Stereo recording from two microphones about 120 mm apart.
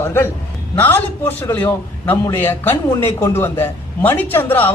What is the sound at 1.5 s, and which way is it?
A man's voice, 15° left (ahead or behind).